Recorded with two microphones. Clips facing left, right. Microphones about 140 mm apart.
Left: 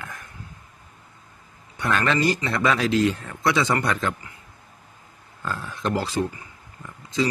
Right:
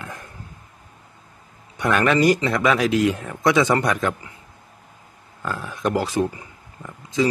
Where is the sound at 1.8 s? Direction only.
15° right (ahead or behind).